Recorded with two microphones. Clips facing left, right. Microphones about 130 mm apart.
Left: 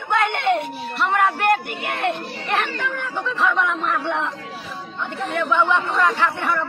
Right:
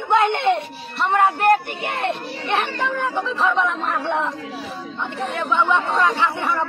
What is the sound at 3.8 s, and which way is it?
Speech, 35° right (ahead or behind).